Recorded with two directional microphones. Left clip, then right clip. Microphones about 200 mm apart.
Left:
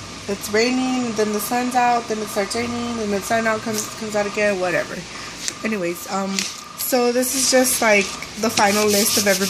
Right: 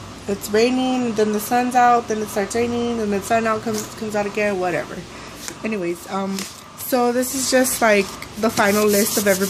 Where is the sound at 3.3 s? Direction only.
15° right (ahead or behind).